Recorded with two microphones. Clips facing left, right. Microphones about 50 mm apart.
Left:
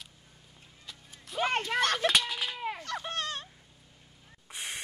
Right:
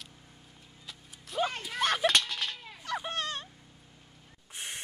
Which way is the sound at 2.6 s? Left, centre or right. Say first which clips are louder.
Left 13 dB; left.